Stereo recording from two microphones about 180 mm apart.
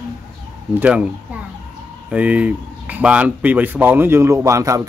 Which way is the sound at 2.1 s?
10° right (ahead or behind).